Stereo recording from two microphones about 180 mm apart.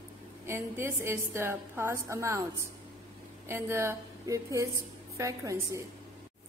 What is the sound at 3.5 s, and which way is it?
A woman's voice, 15° right (ahead or behind).